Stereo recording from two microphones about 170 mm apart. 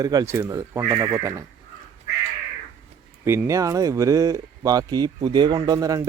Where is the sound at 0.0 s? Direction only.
20° right (ahead or behind).